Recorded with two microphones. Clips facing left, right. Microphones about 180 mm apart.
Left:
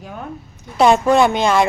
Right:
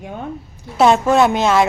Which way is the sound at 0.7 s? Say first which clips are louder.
Even; centre (ahead or behind).